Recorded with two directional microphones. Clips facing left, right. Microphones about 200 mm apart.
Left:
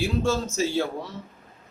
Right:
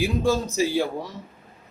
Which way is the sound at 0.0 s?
15° right (ahead or behind).